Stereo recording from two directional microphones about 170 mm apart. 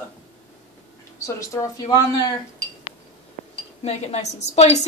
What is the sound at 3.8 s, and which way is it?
Speech, 40° left (ahead or behind).